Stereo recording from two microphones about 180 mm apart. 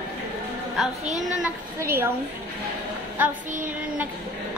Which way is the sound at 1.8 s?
10° right (ahead or behind).